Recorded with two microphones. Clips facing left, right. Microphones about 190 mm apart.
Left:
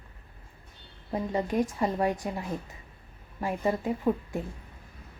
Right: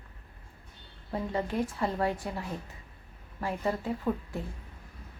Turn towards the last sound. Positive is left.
turn(degrees=15)  # may be behind; listen again after turning